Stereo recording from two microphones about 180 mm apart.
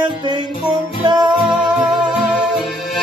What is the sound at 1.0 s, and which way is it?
Music, 25° right (ahead or behind).